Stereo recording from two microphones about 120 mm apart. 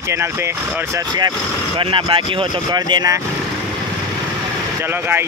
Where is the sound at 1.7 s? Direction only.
50° right (ahead or behind).